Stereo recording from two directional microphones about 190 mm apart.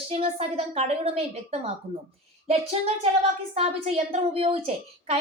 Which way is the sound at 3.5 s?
30° right (ahead or behind).